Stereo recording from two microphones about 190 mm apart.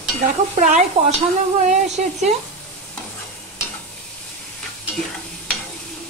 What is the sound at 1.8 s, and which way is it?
Speech, 35° right (ahead or behind).